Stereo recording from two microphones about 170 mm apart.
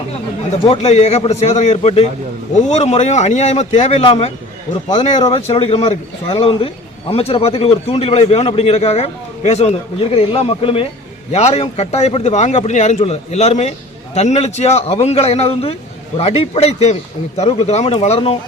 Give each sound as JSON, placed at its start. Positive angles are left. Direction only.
{"t": 0.7, "sound": "a man's voice", "side_deg": 40}